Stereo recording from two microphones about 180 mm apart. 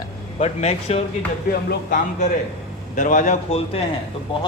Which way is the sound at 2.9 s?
45° left (ahead or behind).